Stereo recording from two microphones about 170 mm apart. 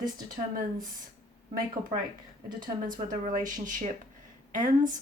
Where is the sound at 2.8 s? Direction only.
50° right (ahead or behind).